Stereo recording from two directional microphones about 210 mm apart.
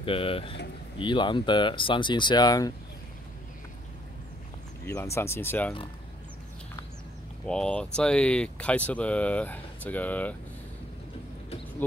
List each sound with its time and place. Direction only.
0.0 s speech: 25° left (ahead or behind)
4.8 s speech: 10° left (ahead or behind)
7.4 s speech: 5° left (ahead or behind)